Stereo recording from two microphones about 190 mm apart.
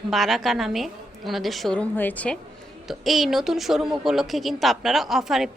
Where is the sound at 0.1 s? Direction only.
Centre (ahead or behind).